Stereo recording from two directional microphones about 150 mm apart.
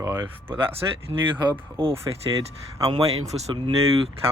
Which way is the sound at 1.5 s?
35° right (ahead or behind).